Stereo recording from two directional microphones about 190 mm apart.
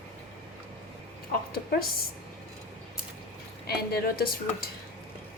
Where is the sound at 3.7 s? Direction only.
55° left (ahead or behind).